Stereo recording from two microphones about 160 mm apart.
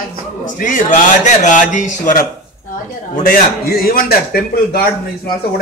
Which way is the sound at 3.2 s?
65° left (ahead or behind).